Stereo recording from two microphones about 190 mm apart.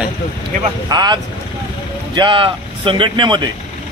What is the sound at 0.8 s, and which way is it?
Speech, 20° right (ahead or behind).